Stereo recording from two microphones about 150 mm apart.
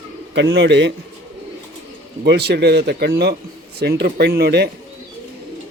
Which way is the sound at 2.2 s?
90° right.